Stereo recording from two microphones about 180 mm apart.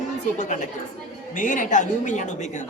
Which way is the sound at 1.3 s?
45° left (ahead or behind).